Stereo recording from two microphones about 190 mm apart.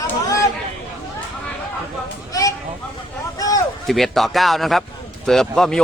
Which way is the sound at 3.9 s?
Centre (ahead or behind).